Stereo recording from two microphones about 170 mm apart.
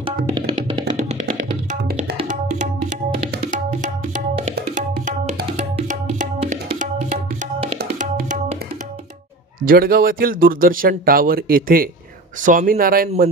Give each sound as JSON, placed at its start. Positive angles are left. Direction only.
{"t": 0.0, "sound": "music", "side_deg": -30}
{"t": 3.5, "sound": "tabla", "side_deg": -50}
{"t": 5.4, "sound": "music", "side_deg": -50}
{"t": 9.7, "sound": "speech", "side_deg": -60}